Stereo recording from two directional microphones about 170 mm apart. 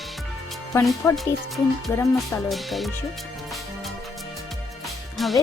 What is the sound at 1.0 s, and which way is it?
Speech, 20° left (ahead or behind).